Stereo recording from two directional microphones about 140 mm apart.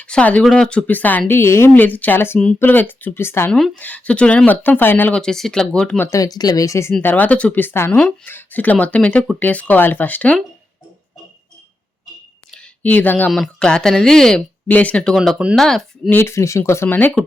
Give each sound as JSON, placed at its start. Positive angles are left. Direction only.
{"t": 0.0, "sound": "speech", "side_deg": 10}
{"t": 6.1, "sound": "speech", "side_deg": 25}
{"t": 12.5, "sound": "a woman's voice", "side_deg": 10}
{"t": 16.1, "sound": "speech", "side_deg": 20}